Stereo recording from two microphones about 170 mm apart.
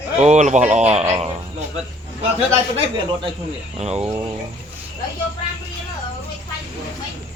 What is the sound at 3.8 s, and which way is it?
Speech, 40° right (ahead or behind).